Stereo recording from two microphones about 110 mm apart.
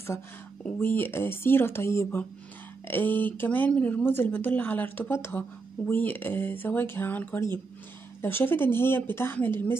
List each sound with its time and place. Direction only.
0.7 s speech: 20° left (ahead or behind)